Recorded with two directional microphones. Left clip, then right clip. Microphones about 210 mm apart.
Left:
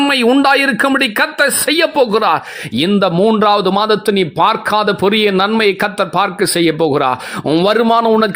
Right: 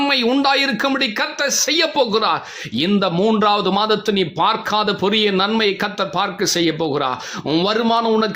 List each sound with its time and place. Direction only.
0.0 s speech: 30° left (ahead or behind)